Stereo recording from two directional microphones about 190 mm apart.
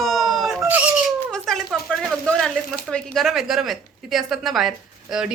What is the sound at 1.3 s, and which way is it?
Speech, centre (ahead or behind).